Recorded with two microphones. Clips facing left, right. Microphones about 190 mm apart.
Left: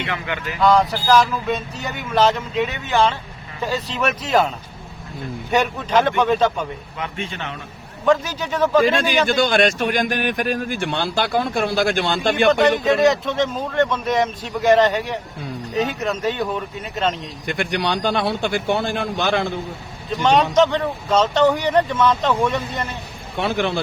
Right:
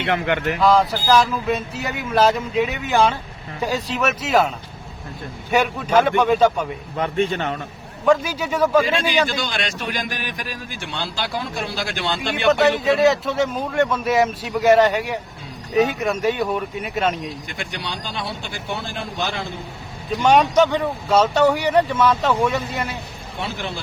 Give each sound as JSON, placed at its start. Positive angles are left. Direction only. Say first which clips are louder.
{"t": 0.0, "sound": "speech", "louder": "right 6 dB", "side_deg": -60}
{"t": 0.6, "sound": "speech", "louder": "left 2 dB", "side_deg": 0}
{"t": 6.9, "sound": "a man's voice", "louder": "right 8 dB", "side_deg": -40}
{"t": 8.0, "sound": "speech", "louder": "right 1 dB", "side_deg": -10}
{"t": 9.4, "sound": "speech", "louder": "left 9 dB", "side_deg": 50}
{"t": 12.5, "sound": "speech", "louder": "right 1 dB", "side_deg": -5}
{"t": 17.4, "sound": "speech", "louder": "left 8 dB", "side_deg": 60}
{"t": 20.2, "sound": "speech", "louder": "even", "side_deg": -10}
{"t": 23.4, "sound": "a man's voice", "louder": "left 8 dB", "side_deg": 65}